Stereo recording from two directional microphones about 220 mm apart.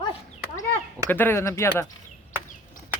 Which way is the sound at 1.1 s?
10° left (ahead or behind).